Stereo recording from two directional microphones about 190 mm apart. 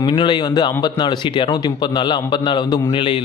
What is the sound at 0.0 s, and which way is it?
Speech, 25° left (ahead or behind).